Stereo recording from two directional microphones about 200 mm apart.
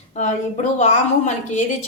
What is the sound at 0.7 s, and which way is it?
Speech, 35° left (ahead or behind).